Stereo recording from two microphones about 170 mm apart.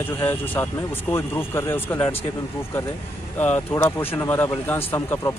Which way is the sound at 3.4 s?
10° left (ahead or behind).